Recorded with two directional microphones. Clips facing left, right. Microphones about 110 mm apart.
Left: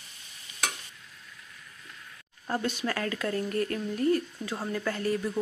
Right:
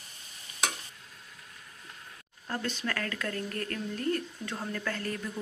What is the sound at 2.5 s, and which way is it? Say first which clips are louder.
Speech: left 4 dB; 15° left (ahead or behind).